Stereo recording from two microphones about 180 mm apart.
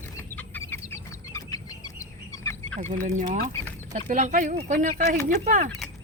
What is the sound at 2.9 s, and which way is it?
Speech, 45° right (ahead or behind).